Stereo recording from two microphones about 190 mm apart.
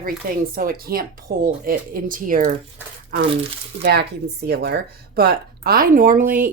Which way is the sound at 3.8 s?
60° right (ahead or behind).